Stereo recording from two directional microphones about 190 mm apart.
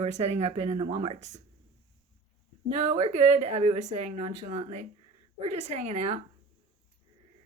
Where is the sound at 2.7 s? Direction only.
35° right (ahead or behind).